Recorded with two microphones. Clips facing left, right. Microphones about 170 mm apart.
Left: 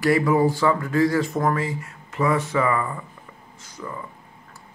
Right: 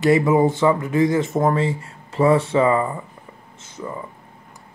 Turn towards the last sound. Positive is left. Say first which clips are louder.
# right 3 dB
turn(degrees=-25)  # may be behind; listen again after turning